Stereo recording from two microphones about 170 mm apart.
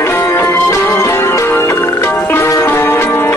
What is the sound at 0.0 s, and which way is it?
Music, 15° left (ahead or behind).